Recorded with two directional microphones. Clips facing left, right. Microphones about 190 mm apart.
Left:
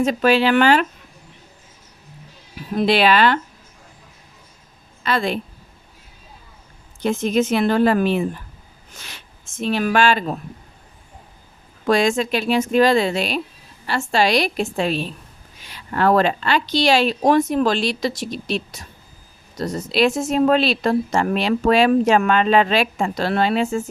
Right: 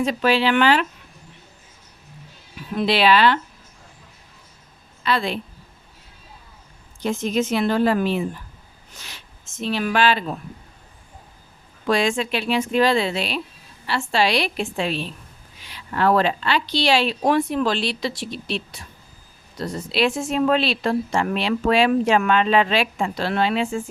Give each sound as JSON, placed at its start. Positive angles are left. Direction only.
{"t": 0.0, "sound": "a woman's voice", "side_deg": 45}
{"t": 2.6, "sound": "a woman's voice", "side_deg": 45}
{"t": 5.0, "sound": "a woman's voice", "side_deg": 45}
{"t": 7.0, "sound": "speech", "side_deg": 60}
{"t": 11.9, "sound": "a woman's voice", "side_deg": 45}